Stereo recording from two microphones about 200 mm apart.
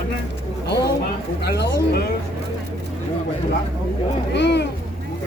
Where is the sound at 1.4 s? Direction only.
55° left (ahead or behind).